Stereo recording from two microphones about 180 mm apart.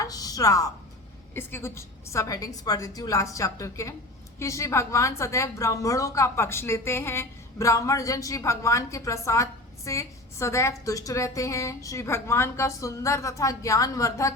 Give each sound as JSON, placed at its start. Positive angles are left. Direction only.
{"t": 0.0, "sound": "a woman's voice", "side_deg": 20}